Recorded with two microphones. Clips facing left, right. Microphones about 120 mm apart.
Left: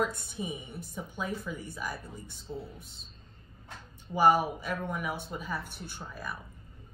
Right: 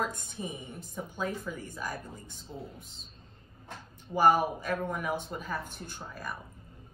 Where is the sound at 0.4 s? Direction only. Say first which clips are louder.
Left 2 dB; 10° left (ahead or behind).